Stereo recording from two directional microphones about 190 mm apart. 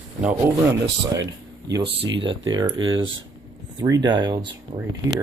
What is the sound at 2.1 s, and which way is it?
Speech, 80° right.